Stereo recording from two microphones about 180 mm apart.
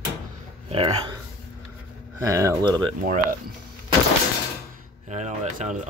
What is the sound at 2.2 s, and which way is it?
Speech, 15° right (ahead or behind).